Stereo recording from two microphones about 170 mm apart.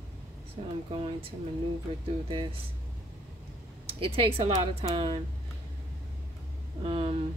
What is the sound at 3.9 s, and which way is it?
Speech, 35° right (ahead or behind).